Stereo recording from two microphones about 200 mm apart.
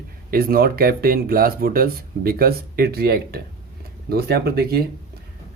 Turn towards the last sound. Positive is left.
turn(degrees=-50)  # may be behind; listen again after turning